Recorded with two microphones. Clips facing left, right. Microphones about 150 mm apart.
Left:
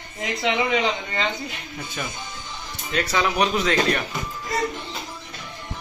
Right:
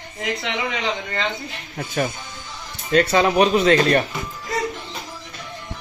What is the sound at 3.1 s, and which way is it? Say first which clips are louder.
Speech: right 3 dB; 30° right (ahead or behind).